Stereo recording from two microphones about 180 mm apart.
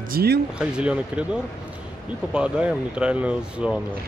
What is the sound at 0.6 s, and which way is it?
Speech, 5° right (ahead or behind).